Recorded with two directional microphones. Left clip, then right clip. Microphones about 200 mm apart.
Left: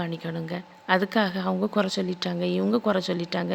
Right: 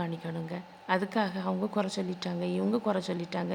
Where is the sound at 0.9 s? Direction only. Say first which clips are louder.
Left 6 dB; 15° left (ahead or behind).